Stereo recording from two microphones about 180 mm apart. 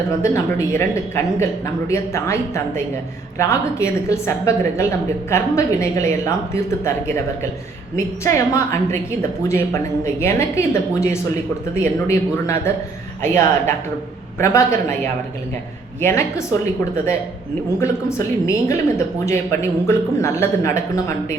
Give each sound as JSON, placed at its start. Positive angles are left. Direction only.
{"t": 0.2, "sound": "speech", "side_deg": 15}
{"t": 7.9, "sound": "speech", "side_deg": 15}
{"t": 17.7, "sound": "speech", "side_deg": 15}